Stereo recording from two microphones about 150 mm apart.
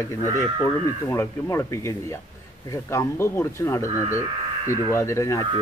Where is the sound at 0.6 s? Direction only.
15° left (ahead or behind).